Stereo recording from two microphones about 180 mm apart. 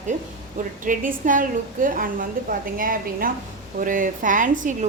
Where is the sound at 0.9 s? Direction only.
50° right (ahead or behind).